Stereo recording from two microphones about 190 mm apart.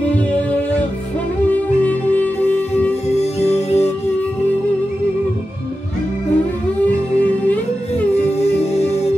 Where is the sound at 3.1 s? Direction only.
35° left (ahead or behind).